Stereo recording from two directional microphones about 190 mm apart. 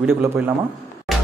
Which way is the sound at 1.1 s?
Centre (ahead or behind).